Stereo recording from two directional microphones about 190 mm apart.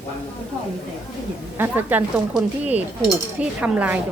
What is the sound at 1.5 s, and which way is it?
Speech, 10° right (ahead or behind).